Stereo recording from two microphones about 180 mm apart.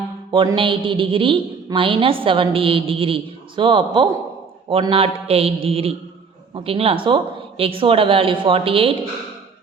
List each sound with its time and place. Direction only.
0.3 s a woman's voice: 25° right (ahead or behind)